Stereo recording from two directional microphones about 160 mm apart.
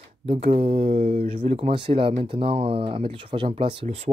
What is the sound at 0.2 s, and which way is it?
Speech, 40° right (ahead or behind).